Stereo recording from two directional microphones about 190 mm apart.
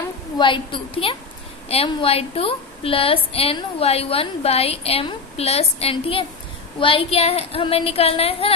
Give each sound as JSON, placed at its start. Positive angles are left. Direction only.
{"t": 0.4, "sound": "a woman's voice", "side_deg": 25}